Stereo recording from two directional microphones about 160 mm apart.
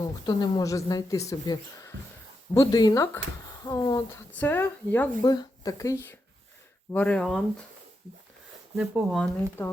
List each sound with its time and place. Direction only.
0.0 s speech: 25° left (ahead or behind)
4.3 s speech: 10° left (ahead or behind)
5.2 s speech: 25° left (ahead or behind); by 7.4 s 5° left (ahead or behind)
8.7 s speech: 5° right (ahead or behind)
9.6 s speech: 15° left (ahead or behind)